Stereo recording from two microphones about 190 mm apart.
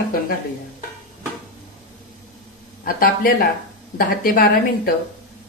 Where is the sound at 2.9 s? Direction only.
50° left (ahead or behind).